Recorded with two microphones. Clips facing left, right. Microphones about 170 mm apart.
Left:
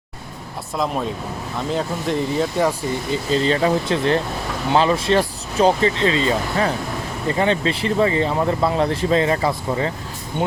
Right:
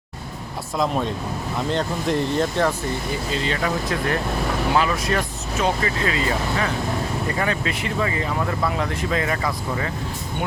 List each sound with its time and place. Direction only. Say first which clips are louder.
0.8 s speech: even; centre (ahead or behind)
3.3 s speech: left 8 dB; 35° left (ahead or behind)